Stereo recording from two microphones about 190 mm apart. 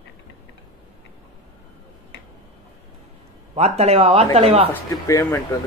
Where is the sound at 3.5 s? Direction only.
35° right (ahead or behind).